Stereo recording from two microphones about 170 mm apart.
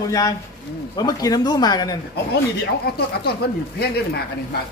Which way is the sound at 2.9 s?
70° left (ahead or behind).